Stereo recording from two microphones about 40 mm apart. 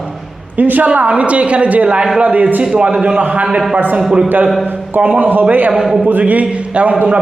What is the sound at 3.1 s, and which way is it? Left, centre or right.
Speech, right.